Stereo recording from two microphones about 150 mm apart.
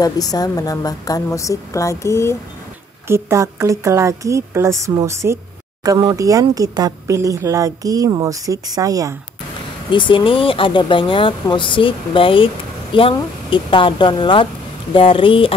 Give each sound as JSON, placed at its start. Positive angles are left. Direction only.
{"t": 0.0, "sound": "a woman's voice", "side_deg": 25}
{"t": 3.1, "sound": "speech", "side_deg": -20}
{"t": 9.8, "sound": "speech", "side_deg": 35}